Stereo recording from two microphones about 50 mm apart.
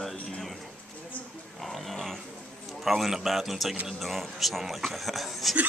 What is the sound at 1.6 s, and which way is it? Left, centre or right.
Pig, centre.